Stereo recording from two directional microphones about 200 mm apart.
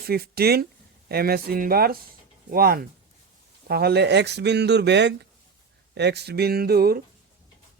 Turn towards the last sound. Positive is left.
turn(degrees=-50)  # may be behind; listen again after turning